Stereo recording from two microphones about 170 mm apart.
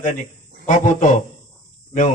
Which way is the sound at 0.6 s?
50° left (ahead or behind).